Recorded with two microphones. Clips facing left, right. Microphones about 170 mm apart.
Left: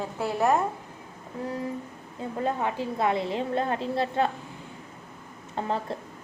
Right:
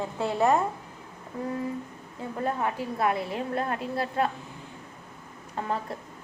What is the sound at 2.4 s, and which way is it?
A woman's voice, 20° left (ahead or behind).